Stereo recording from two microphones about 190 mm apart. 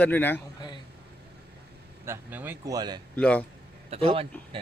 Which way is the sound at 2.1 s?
10° right (ahead or behind).